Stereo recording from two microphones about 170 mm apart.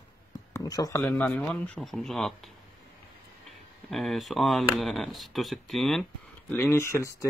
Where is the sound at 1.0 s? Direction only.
5° left (ahead or behind).